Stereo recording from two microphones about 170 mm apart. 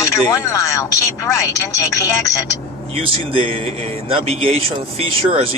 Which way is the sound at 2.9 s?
35° right (ahead or behind).